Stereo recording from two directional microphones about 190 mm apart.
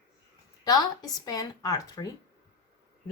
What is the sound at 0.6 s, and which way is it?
Speech, 20° left (ahead or behind).